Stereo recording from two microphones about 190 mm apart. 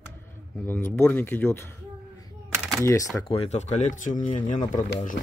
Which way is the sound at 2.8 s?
15° left (ahead or behind).